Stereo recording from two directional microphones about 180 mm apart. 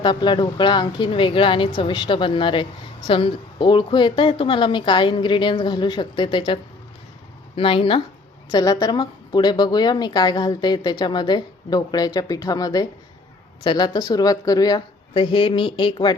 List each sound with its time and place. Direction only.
0.0 s a woman's voice: 25° left (ahead or behind)